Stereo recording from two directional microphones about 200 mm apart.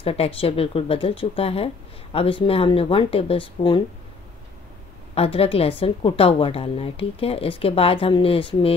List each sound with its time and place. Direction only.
0.0 s a woman's voice: 30° left (ahead or behind)
5.1 s a woman's voice: 30° left (ahead or behind)